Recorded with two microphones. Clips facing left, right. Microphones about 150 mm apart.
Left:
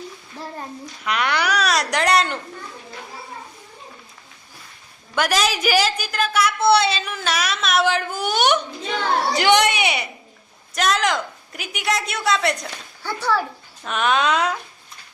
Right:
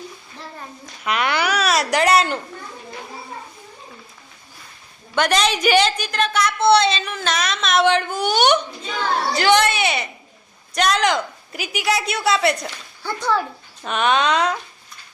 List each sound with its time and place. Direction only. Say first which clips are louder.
1.0 s a sound: right 1 dB; centre (ahead or behind)
5.1 s a woman's voice: right 2 dB; 5° left (ahead or behind)
9.3 s a woman's voice: right 1 dB; 15° left (ahead or behind)
10.8 s a woman's voice: right 2 dB; centre (ahead or behind); by 13.4 s 15° right (ahead or behind)
13.8 s a woman's voice: right 1 dB; centre (ahead or behind)